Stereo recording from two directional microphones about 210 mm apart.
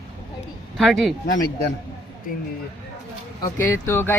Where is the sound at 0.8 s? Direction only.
Centre (ahead or behind).